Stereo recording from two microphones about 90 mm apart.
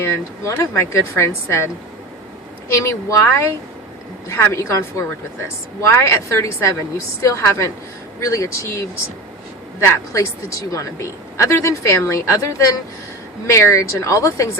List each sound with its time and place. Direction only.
0.0 s a woman's voice: 30° left (ahead or behind)
4.5 s a woman's voice: 35° left (ahead or behind)